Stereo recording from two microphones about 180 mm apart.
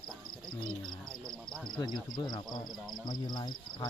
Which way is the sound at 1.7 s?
25° left (ahead or behind).